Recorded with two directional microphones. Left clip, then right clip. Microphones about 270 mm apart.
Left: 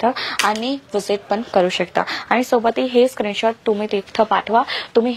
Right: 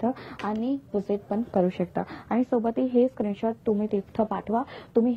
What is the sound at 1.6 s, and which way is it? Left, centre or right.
A woman's voice, centre.